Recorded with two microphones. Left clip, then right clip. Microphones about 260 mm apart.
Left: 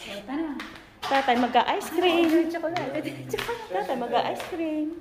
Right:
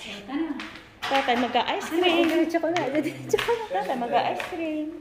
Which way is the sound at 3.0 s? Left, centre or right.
Right.